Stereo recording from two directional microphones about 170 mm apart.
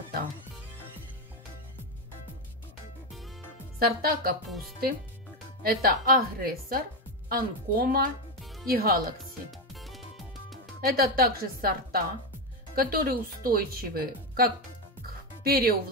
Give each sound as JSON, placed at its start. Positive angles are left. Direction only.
{"t": 3.8, "sound": "speech", "side_deg": -60}
{"t": 4.5, "sound": "speech", "side_deg": 0}
{"t": 5.6, "sound": "speech", "side_deg": -60}
{"t": 9.8, "sound": "music", "side_deg": 0}
{"t": 10.8, "sound": "speech", "side_deg": -65}